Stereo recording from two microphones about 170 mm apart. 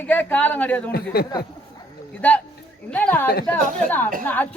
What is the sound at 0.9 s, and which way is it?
Speech, 65° left (ahead or behind).